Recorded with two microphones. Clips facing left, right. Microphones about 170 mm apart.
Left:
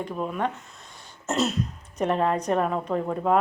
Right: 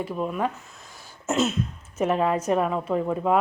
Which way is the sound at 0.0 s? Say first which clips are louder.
Right 1 dB; 5° right (ahead or behind).